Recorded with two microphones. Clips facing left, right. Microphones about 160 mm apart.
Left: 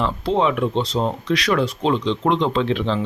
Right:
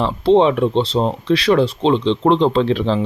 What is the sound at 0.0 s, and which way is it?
Speech, 30° right (ahead or behind).